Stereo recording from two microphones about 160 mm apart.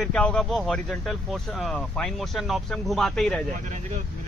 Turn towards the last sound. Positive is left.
turn(degrees=0)  # may be behind; listen again after turning